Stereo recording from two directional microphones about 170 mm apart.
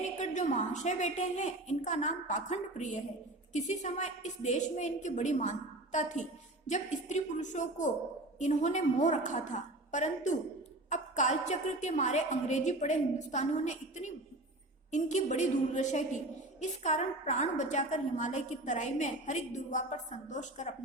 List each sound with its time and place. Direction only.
0.0 s a woman's voice: 45° left (ahead or behind)